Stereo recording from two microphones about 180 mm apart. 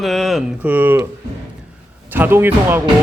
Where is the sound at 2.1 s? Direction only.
10° right (ahead or behind).